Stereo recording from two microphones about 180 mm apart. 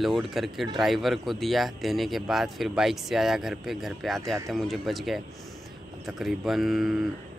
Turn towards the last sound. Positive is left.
turn(degrees=0)  # may be behind; listen again after turning